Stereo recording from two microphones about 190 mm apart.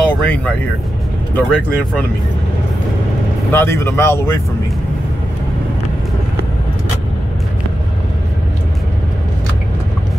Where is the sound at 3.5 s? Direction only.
15° left (ahead or behind).